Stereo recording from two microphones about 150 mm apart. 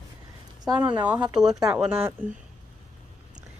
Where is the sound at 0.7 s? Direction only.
30° right (ahead or behind).